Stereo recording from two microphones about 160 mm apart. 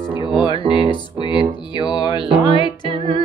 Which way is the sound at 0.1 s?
30° left (ahead or behind).